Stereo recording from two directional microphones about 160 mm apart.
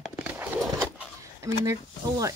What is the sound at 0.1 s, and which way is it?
Horse, 10° right (ahead or behind).